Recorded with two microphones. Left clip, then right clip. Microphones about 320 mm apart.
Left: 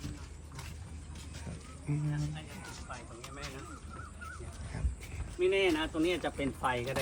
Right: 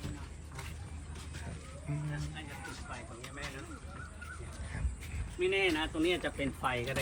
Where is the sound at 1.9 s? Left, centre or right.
Centre.